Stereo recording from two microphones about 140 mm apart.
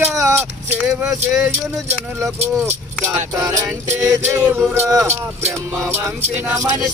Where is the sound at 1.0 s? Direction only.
5° right (ahead or behind).